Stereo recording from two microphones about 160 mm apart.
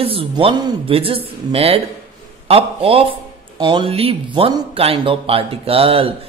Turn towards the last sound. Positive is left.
turn(degrees=-35)  # may be behind; listen again after turning